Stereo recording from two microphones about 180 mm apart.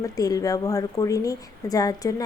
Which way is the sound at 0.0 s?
20° left (ahead or behind).